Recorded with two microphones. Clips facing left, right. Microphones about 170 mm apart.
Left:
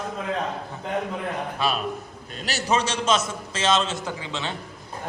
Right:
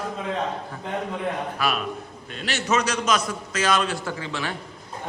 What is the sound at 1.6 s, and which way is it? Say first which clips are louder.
A man's voice: left 1 dB; 25° left (ahead or behind).